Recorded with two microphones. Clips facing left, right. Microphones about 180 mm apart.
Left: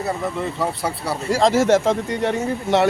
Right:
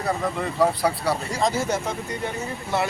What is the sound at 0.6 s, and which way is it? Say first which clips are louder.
Speech: right 7 dB; centre (ahead or behind).